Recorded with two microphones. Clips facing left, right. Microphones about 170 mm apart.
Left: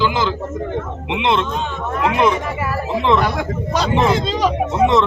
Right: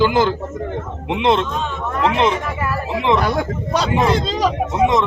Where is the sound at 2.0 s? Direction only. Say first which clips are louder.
Left 1 dB; 25° right (ahead or behind).